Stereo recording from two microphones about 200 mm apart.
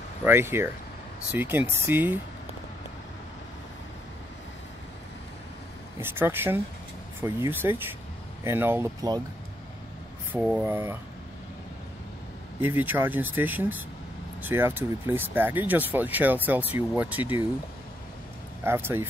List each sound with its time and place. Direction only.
0.2 s speech: 10° right (ahead or behind)
5.9 s speech: 10° right (ahead or behind)
10.3 s speech: 5° right (ahead or behind)
12.5 s speech: 10° right (ahead or behind)
18.6 s speech: 10° right (ahead or behind)